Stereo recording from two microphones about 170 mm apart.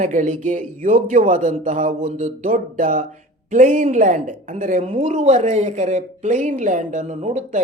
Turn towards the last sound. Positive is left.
turn(degrees=-45)  # may be behind; listen again after turning